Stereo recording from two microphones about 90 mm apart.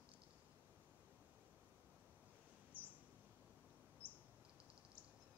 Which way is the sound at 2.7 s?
15° left (ahead or behind).